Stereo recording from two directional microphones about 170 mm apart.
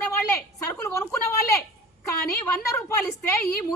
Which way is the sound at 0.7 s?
15° left (ahead or behind).